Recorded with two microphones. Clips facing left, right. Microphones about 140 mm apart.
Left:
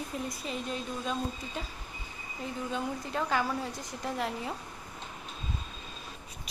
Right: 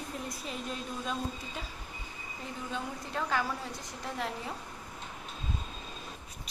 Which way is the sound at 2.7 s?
5° left (ahead or behind).